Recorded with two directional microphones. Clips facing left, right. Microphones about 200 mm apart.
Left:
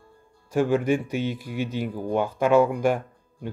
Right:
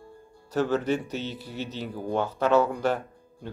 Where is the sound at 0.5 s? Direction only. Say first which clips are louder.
Left 3 dB; 10° left (ahead or behind).